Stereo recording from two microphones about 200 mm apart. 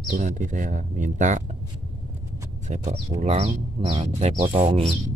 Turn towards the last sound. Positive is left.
turn(degrees=-25)  # may be behind; listen again after turning